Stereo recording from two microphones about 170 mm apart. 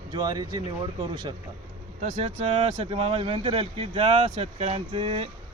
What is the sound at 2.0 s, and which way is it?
Speech, 40° right (ahead or behind).